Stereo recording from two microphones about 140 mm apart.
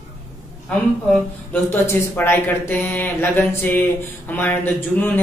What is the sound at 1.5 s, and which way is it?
Speech, 15° left (ahead or behind).